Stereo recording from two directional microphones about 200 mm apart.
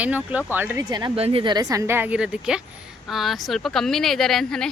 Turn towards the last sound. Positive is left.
turn(degrees=5)  # may be behind; listen again after turning